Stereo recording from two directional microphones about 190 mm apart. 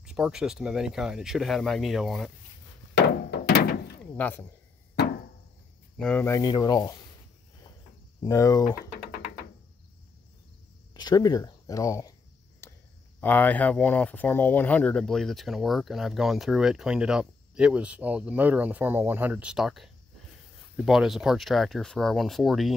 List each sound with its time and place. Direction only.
0.0 s speech: 5° right (ahead or behind)
2.9 s a sound: 65° left (ahead or behind)
4.0 s speech: 10° left (ahead or behind)
5.9 s speech: 5° left (ahead or behind)
6.2 s speech: 20° left (ahead or behind)
8.2 s speech: 15° left (ahead or behind)
10.9 s speech: 20° left (ahead or behind)
12.6 s a sound: 15° left (ahead or behind)
13.2 s speech: 10° left (ahead or behind)